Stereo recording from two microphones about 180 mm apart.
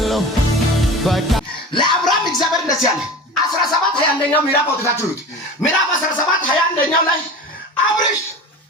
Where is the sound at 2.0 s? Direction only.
Centre (ahead or behind).